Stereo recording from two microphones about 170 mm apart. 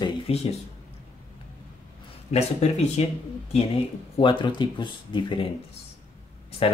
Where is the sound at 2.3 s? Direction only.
40° left (ahead or behind).